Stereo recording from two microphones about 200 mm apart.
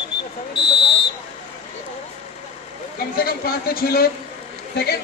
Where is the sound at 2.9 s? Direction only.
50° left (ahead or behind).